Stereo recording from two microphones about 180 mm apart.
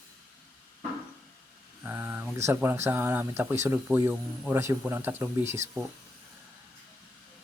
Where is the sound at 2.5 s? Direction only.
10° right (ahead or behind).